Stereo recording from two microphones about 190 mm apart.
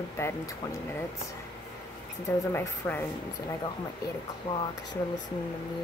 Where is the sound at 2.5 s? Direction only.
10° left (ahead or behind).